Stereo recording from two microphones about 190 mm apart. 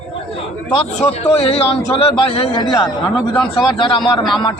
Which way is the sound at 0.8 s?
30° left (ahead or behind).